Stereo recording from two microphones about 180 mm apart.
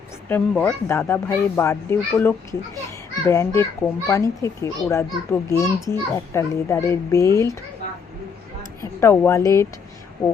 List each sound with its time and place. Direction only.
0.3 s speech: 10° left (ahead or behind)
8.8 s speech: 15° left (ahead or behind)